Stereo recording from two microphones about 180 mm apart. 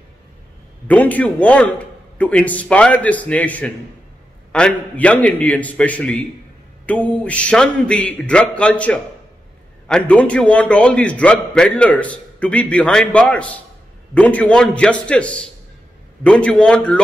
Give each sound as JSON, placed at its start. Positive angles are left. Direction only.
{"t": 0.8, "sound": "a man's voice", "side_deg": 10}